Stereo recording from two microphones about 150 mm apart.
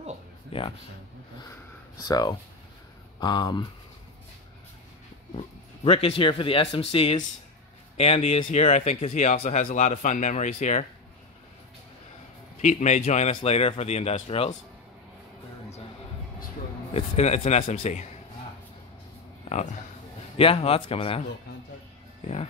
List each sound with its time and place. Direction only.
0.5 s speech: 35° left (ahead or behind)
2.0 s speech: 25° left (ahead or behind)
5.9 s a man's voice: 40° left (ahead or behind)
12.5 s a man's voice: 50° left (ahead or behind)
16.9 s a man's voice: 45° left (ahead or behind)
20.3 s speech: 40° left (ahead or behind)